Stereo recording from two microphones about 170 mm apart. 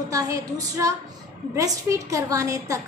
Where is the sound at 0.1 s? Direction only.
20° right (ahead or behind).